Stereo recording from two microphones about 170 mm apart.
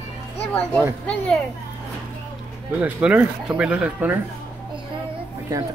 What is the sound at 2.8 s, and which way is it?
Speech, 10° right (ahead or behind).